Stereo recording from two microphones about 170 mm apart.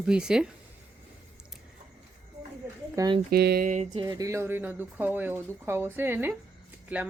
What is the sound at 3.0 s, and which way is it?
Speech, 20° right (ahead or behind).